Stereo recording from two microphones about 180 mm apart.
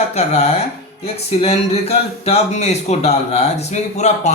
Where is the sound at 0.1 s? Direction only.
35° left (ahead or behind).